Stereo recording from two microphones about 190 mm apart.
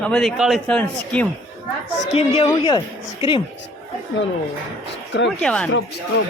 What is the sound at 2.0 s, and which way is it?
A woman's voice, 30° left (ahead or behind).